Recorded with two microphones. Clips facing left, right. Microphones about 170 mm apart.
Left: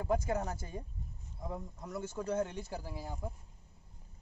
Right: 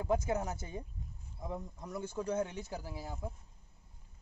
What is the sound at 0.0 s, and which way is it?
Speech, centre (ahead or behind).